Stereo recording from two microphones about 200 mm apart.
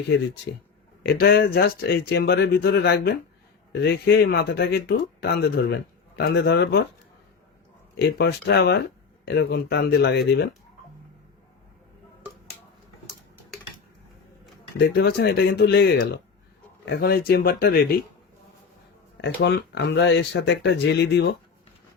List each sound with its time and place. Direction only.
1.0 s speech: 55° left (ahead or behind)
8.0 s speech: 55° left (ahead or behind)
14.8 s speech: 55° left (ahead or behind)
19.1 s speech: 60° left (ahead or behind)